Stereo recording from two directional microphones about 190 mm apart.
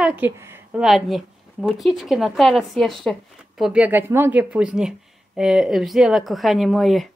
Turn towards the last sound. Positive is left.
turn(degrees=0)  # may be behind; listen again after turning